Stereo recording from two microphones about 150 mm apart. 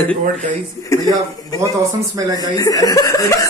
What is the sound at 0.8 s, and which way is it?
Speech, 25° left (ahead or behind).